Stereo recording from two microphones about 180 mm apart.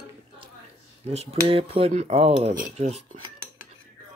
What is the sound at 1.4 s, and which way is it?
Speech, 30° right (ahead or behind).